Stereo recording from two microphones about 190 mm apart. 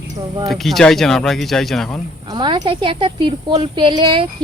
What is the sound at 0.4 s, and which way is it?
Speech, centre (ahead or behind).